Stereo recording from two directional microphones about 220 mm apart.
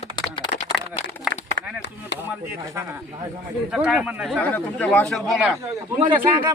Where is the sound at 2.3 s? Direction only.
10° right (ahead or behind).